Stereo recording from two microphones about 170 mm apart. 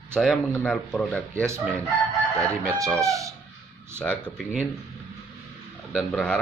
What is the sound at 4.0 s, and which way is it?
Speech, 5° left (ahead or behind).